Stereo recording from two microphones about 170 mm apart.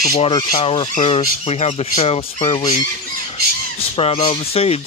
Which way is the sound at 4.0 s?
35° left (ahead or behind).